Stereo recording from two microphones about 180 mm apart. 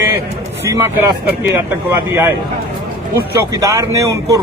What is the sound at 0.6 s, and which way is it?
Speech, 10° right (ahead or behind).